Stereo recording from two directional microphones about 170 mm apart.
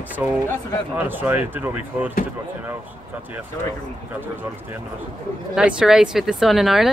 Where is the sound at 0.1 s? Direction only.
10° right (ahead or behind).